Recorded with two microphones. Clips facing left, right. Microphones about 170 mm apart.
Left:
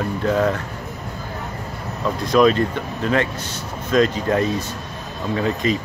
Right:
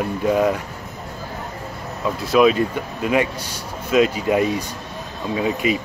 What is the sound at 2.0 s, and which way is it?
Speech, 5° right (ahead or behind).